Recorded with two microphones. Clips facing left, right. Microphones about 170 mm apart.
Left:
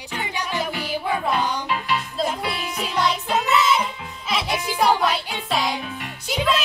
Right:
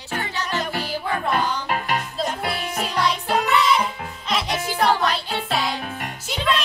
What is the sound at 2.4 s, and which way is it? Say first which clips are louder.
Music: right 1 dB; 45° right (ahead or behind).